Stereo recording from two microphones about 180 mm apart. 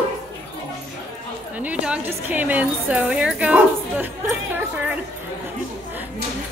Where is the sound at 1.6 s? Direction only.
10° right (ahead or behind).